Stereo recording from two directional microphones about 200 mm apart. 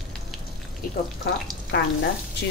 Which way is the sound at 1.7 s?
60° left (ahead or behind).